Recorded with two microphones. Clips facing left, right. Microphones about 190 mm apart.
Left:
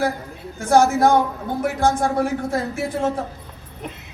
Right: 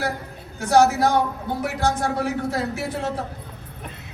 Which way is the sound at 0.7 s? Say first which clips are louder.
Left 2 dB; 50° left (ahead or behind).